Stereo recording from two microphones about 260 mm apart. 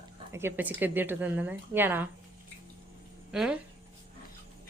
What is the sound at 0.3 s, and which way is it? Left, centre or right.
A woman's voice, centre.